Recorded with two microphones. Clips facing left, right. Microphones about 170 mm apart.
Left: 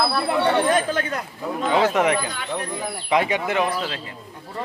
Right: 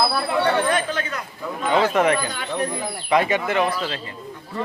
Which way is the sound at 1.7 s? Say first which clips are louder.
Right 1 dB; 15° left (ahead or behind).